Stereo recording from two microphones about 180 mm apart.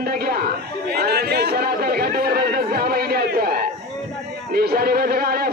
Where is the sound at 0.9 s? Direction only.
60° right (ahead or behind).